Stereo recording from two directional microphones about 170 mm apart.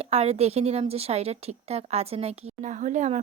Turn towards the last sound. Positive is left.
turn(degrees=-45)  # may be behind; listen again after turning